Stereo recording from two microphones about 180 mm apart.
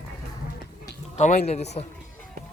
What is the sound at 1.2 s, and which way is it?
Speech, 40° left (ahead or behind).